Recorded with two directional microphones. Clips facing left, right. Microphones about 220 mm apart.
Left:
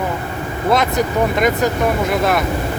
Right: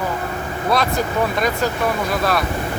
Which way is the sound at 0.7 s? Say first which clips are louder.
Left 3 dB; 20° left (ahead or behind).